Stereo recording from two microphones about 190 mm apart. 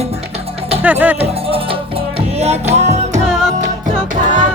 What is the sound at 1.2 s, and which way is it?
Music, 30° right (ahead or behind).